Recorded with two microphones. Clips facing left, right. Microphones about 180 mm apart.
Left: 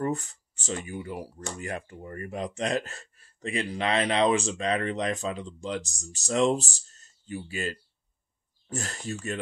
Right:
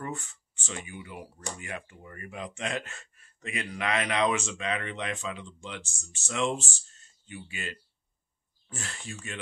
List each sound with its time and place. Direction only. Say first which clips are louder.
0.0 s speech: left 8 dB; 40° left (ahead or behind)